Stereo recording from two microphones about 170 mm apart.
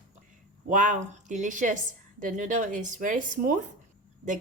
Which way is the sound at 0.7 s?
50° right (ahead or behind).